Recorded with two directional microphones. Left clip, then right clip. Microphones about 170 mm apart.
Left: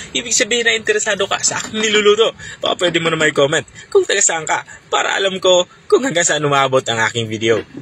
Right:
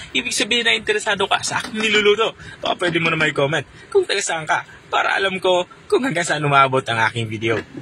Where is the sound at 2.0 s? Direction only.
15° left (ahead or behind).